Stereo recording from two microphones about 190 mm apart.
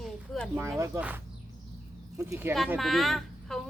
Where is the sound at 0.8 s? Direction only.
10° right (ahead or behind).